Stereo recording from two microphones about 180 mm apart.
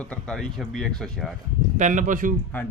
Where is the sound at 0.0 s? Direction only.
5° left (ahead or behind).